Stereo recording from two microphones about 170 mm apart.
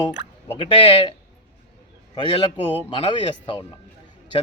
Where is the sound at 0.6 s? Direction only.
30° left (ahead or behind).